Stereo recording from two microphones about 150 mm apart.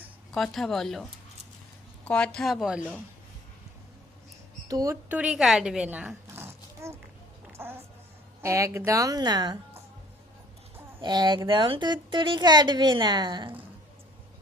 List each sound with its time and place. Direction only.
0.3 s a woman's voice: centre (ahead or behind)
2.0 s a woman's voice: 5° left (ahead or behind)
4.7 s a woman's voice: 25° right (ahead or behind)
5.0 s a sound: 10° right (ahead or behind)
8.4 s a woman's voice: 20° right (ahead or behind)
11.0 s speech: 30° right (ahead or behind)